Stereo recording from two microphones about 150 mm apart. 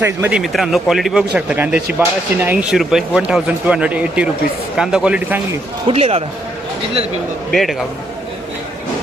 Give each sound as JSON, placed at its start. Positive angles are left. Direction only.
{"t": 0.0, "sound": "speech", "side_deg": -10}
{"t": 5.9, "sound": "speech", "side_deg": -40}
{"t": 7.5, "sound": "speech", "side_deg": 0}